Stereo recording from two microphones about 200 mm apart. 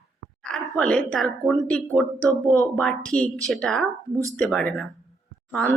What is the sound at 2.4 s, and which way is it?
Speech, 15° right (ahead or behind).